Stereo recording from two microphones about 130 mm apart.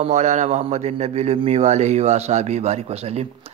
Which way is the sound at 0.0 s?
65° right (ahead or behind).